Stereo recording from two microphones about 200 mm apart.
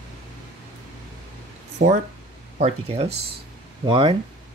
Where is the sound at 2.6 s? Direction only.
30° right (ahead or behind).